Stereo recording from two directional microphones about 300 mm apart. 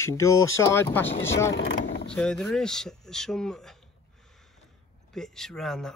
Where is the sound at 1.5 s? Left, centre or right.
Left.